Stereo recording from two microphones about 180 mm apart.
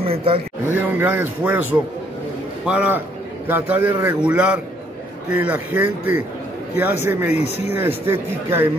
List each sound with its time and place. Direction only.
0.0 s speech: 30° right (ahead or behind)
0.7 s speech: 10° right (ahead or behind)